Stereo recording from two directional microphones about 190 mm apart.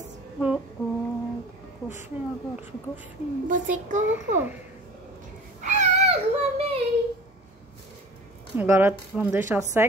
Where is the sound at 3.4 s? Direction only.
45° right (ahead or behind).